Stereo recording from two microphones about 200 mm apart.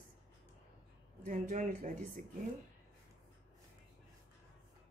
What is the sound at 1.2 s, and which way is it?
Speech, 40° right (ahead or behind).